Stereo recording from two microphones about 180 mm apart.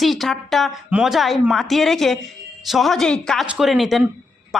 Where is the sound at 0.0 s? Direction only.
Centre (ahead or behind).